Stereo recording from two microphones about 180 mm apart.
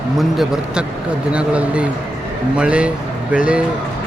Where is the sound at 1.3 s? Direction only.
5° right (ahead or behind).